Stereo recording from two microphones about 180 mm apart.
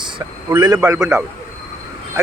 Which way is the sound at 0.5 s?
20° right (ahead or behind).